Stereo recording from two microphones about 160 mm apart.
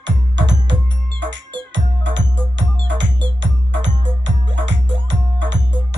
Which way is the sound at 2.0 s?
90° right.